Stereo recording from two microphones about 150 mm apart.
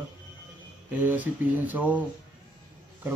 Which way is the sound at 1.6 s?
10° right (ahead or behind).